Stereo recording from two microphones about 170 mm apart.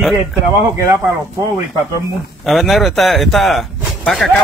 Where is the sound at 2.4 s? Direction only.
Centre (ahead or behind).